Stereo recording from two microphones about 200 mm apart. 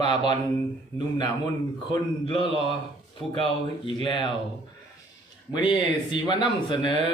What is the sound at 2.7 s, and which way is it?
Speech, 25° left (ahead or behind).